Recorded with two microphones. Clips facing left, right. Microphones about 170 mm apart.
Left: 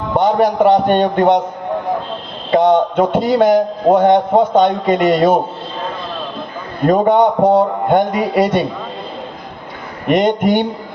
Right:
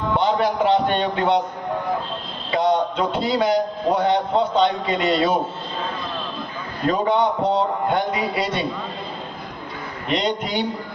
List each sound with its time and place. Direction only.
0.2 s a man's voice: 45° left (ahead or behind)
2.5 s a man's voice: 50° left (ahead or behind)
6.8 s a man's voice: 45° left (ahead or behind)
10.1 s a man's voice: 50° left (ahead or behind)